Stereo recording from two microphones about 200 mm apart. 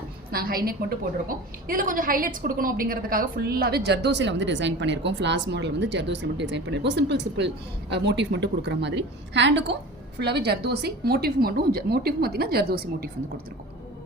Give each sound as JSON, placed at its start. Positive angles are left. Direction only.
{"t": 0.3, "sound": "a woman's voice", "side_deg": -50}